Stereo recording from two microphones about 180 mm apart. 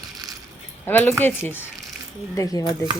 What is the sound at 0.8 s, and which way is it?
A woman's voice, 10° left (ahead or behind).